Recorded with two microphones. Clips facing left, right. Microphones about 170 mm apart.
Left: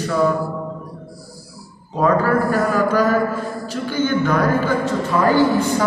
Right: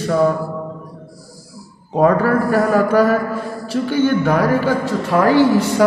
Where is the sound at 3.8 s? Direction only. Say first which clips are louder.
Right 3 dB; 65° right (ahead or behind).